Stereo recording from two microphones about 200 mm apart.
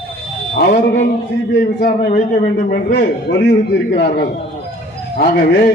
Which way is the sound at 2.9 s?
55° left (ahead or behind).